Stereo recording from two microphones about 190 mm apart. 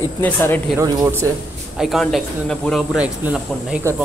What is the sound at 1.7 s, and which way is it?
Speech, centre (ahead or behind).